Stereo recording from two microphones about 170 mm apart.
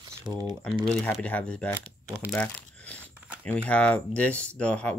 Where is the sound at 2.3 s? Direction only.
10° left (ahead or behind).